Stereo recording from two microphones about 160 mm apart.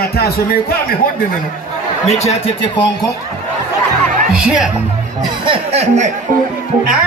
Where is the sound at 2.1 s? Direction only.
45° left (ahead or behind).